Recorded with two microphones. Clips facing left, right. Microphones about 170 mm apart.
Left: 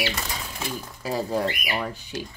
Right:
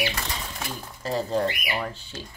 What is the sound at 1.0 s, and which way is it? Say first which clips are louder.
Speech: right 1 dB; 10° left (ahead or behind).